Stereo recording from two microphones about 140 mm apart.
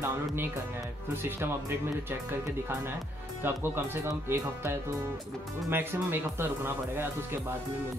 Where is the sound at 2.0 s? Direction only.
15° right (ahead or behind).